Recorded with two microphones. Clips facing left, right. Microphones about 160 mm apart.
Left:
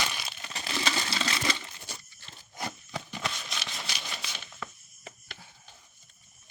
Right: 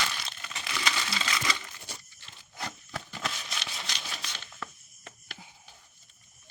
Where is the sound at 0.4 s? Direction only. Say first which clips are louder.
Left 2 dB; 30° left (ahead or behind).